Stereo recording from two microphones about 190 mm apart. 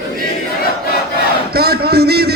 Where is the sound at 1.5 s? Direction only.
55° right (ahead or behind).